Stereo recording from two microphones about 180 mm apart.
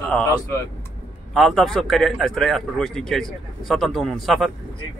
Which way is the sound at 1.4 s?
Centre (ahead or behind).